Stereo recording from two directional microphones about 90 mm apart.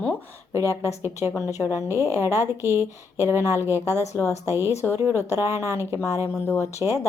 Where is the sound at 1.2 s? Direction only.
20° right (ahead or behind).